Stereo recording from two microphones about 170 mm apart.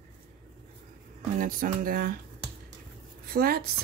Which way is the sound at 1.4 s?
55° right (ahead or behind).